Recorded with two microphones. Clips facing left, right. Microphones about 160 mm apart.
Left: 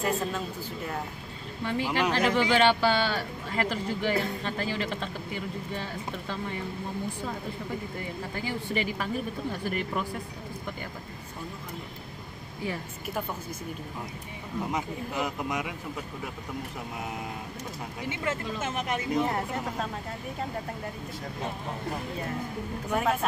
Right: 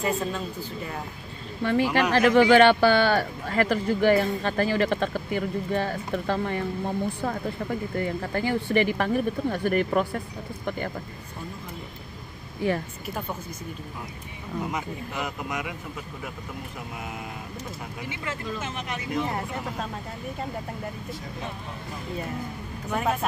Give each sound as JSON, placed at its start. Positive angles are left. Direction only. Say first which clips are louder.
{"t": 0.0, "sound": "speech", "louder": "right 2 dB", "side_deg": 0}
{"t": 1.6, "sound": "speech", "louder": "right 5 dB", "side_deg": -60}
{"t": 8.0, "sound": "speech", "louder": "right 7 dB", "side_deg": -60}
{"t": 14.7, "sound": "speech", "louder": "even", "side_deg": 30}
{"t": 18.2, "sound": "speech", "louder": "left 1 dB", "side_deg": 50}
{"t": 22.8, "sound": "speech", "louder": "right 1 dB", "side_deg": 5}